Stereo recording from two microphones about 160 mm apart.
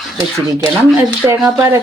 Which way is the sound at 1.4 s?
20° right (ahead or behind).